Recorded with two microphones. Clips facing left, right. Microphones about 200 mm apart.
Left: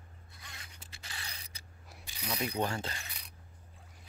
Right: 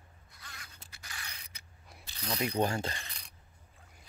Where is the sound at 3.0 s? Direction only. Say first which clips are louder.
Even; 5° left (ahead or behind).